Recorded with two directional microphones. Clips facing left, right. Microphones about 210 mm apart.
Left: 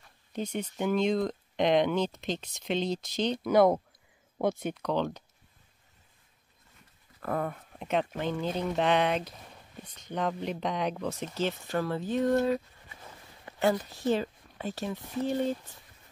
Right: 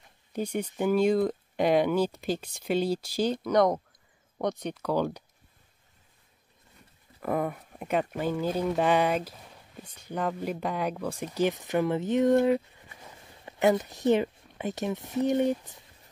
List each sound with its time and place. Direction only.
0.3 s speech: 10° right (ahead or behind)
3.5 s speech: 5° left (ahead or behind)
7.2 s speech: 10° right (ahead or behind)